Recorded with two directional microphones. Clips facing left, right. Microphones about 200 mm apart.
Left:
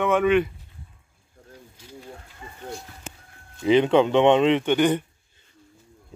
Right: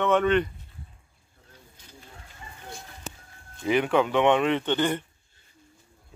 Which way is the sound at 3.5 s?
20° left (ahead or behind).